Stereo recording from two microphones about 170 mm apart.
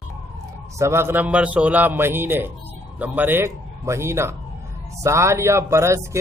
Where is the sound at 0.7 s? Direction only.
15° right (ahead or behind).